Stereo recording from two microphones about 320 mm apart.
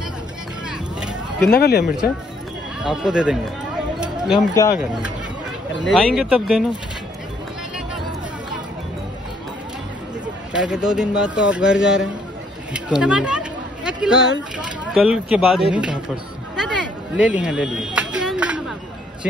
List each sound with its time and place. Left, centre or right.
0.7 s a sound: centre
1.5 s speech: left
2.8 s speech: centre
4.6 s speech: centre
5.9 s speech: centre
10.5 s speech: centre
12.7 s a sound: centre
15.0 s speech: centre
17.2 s a sound: centre